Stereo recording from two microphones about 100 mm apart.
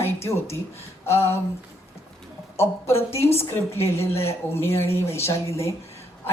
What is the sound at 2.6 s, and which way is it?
Speech, 25° left (ahead or behind).